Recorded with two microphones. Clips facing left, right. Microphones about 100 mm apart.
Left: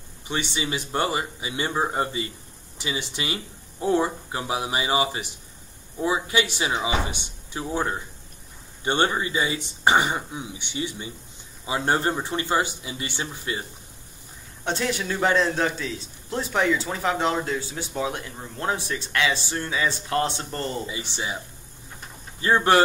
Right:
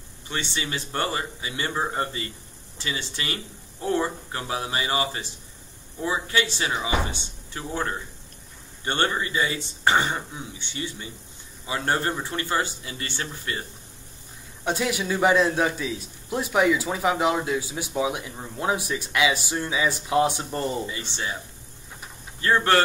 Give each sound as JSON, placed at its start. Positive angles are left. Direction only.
{"t": 0.3, "sound": "speech", "side_deg": 15}
{"t": 14.6, "sound": "a man's voice", "side_deg": -10}
{"t": 20.8, "sound": "speech", "side_deg": 15}
{"t": 22.4, "sound": "speech", "side_deg": 20}